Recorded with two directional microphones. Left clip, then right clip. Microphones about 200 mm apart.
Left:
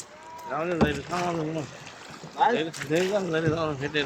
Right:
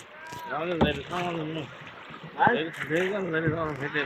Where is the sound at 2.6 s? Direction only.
45° left (ahead or behind).